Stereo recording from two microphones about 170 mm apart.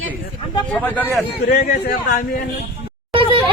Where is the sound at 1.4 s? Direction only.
60° left (ahead or behind).